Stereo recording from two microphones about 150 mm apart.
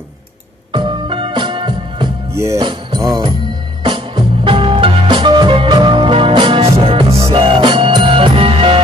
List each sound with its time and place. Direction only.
0.7 s music: 30° right (ahead or behind)
2.3 s music: 20° right (ahead or behind)
2.6 s music: 30° right (ahead or behind)